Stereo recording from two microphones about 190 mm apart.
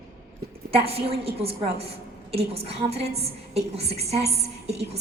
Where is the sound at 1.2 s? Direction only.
30° right (ahead or behind).